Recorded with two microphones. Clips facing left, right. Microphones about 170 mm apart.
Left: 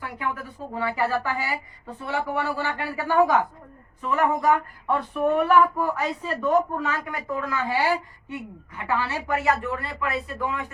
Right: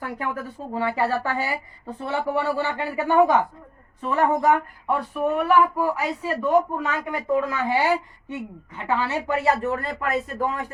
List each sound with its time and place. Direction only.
0.7 s speech: 30° right (ahead or behind)
4.5 s speech: 10° right (ahead or behind); by 10.7 s 40° right (ahead or behind)